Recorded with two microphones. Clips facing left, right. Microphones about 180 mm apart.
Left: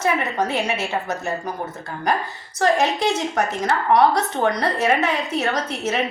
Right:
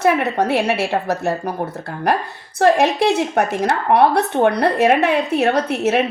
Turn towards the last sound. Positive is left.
turn(degrees=-60)  # may be behind; listen again after turning